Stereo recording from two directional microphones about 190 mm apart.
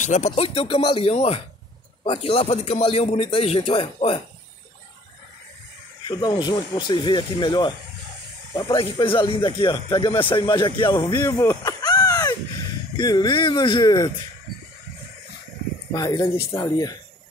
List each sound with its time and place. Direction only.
0.0 s speech: 40° left (ahead or behind)
6.0 s speech: 25° left (ahead or behind)
15.9 s speech: 20° left (ahead or behind)